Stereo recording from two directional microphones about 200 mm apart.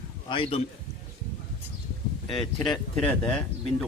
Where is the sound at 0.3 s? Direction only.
25° left (ahead or behind).